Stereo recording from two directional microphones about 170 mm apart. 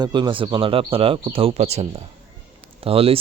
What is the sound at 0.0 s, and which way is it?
Speech, 25° right (ahead or behind).